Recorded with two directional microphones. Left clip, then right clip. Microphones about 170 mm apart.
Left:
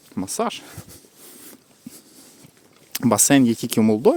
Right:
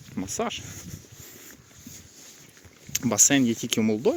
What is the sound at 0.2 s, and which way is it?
Speech, 40° left (ahead or behind).